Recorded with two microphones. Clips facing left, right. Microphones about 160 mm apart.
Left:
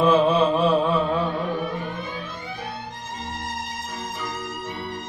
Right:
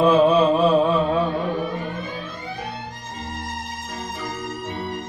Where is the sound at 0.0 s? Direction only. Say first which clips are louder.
Right 2 dB; 20° right (ahead or behind).